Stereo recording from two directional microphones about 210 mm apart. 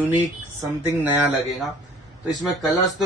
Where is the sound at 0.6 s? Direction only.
10° right (ahead or behind).